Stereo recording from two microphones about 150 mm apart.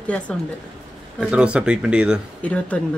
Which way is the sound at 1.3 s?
5° right (ahead or behind).